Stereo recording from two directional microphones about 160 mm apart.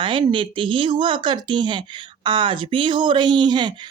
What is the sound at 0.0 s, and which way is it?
Speech, 30° right (ahead or behind).